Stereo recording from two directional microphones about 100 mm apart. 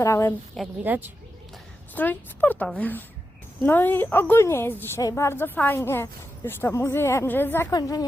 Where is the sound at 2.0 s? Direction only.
20° left (ahead or behind).